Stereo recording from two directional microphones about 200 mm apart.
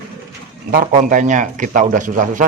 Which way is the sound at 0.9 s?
40° right (ahead or behind).